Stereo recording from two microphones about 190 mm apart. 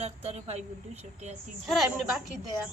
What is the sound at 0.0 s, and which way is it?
A woman's voice, 35° right (ahead or behind).